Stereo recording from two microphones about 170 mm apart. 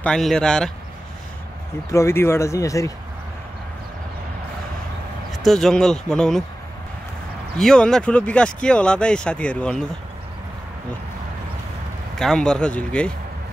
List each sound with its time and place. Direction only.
0.0 s speech: 5° left (ahead or behind)
1.9 s speech: 15° left (ahead or behind)
5.3 s speech: centre (ahead or behind)
7.5 s speech: 5° left (ahead or behind)
12.2 s speech: 5° left (ahead or behind)